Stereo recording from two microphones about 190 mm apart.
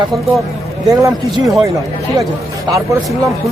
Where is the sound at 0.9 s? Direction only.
20° right (ahead or behind).